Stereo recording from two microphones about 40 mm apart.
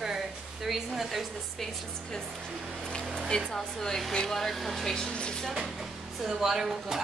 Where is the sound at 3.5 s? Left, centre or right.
Centre.